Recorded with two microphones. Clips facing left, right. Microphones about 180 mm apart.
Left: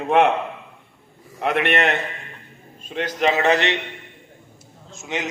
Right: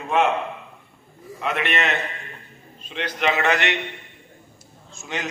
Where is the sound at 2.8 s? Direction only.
45° left (ahead or behind).